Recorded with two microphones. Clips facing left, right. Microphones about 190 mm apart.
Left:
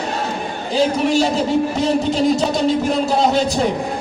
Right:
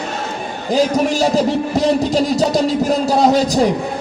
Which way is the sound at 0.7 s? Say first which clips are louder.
Right 1 dB; 40° right (ahead or behind).